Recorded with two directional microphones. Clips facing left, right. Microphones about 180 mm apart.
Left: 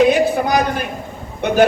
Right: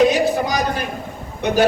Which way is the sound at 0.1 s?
55° left (ahead or behind).